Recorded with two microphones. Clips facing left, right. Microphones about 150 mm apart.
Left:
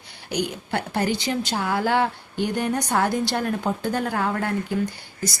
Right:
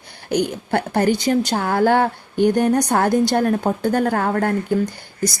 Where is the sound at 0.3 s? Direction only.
50° right (ahead or behind).